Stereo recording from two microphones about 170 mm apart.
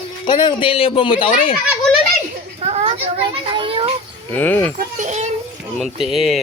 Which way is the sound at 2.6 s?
40° right (ahead or behind).